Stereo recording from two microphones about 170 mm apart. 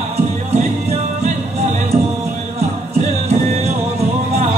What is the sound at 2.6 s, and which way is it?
Music, 40° right (ahead or behind).